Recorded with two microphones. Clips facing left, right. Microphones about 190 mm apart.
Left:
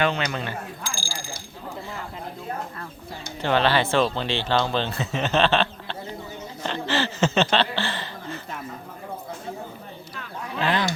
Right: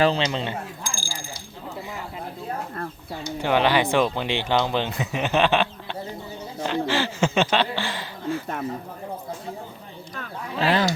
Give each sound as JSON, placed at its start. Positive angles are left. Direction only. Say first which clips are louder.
{"t": 0.0, "sound": "speech", "louder": "right 3 dB", "side_deg": -30}
{"t": 3.4, "sound": "speech", "louder": "right 1 dB", "side_deg": -15}
{"t": 10.2, "sound": "speech", "louder": "right 2 dB", "side_deg": -35}